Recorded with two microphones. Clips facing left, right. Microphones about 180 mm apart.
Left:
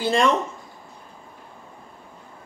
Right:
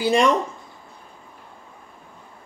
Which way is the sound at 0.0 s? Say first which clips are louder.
Right 2 dB; 15° right (ahead or behind).